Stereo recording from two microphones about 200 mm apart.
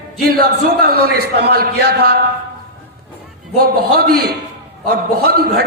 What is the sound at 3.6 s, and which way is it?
A man's voice, 50° right (ahead or behind).